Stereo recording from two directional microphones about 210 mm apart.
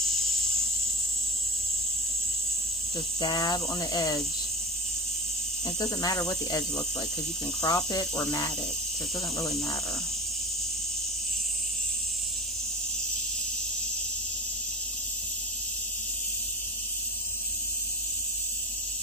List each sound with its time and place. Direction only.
3.2 s speech: 20° left (ahead or behind)
5.8 s speech: 20° left (ahead or behind)
7.6 s speech: 20° left (ahead or behind)